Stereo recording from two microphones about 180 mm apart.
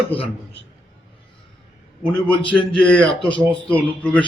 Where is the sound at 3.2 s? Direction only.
25° left (ahead or behind).